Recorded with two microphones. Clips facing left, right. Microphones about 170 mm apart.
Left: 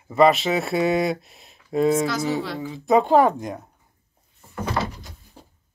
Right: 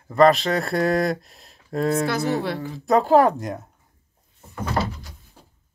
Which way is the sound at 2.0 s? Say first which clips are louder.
Right 1 dB; 60° right (ahead or behind).